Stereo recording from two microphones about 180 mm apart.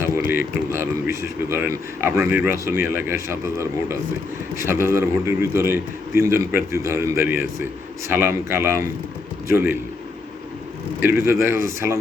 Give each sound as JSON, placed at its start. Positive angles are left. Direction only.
{"t": 0.2, "sound": "a man's voice", "side_deg": -10}
{"t": 2.5, "sound": "speech", "side_deg": 55}
{"t": 2.8, "sound": "a man's voice", "side_deg": -10}
{"t": 11.3, "sound": "a man's voice", "side_deg": -15}